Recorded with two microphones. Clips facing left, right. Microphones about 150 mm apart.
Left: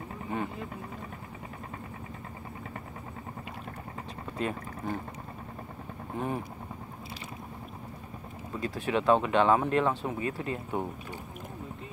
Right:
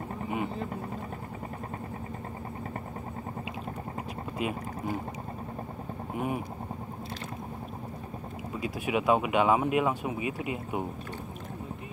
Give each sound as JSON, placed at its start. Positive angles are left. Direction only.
{"t": 4.4, "sound": "speech", "side_deg": -10}
{"t": 6.1, "sound": "speech", "side_deg": -10}
{"t": 8.5, "sound": "speech", "side_deg": -10}